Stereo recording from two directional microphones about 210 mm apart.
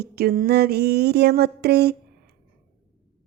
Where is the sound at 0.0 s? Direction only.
45° right (ahead or behind).